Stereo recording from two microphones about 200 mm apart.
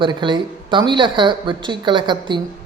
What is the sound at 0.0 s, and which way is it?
Speech, 25° right (ahead or behind).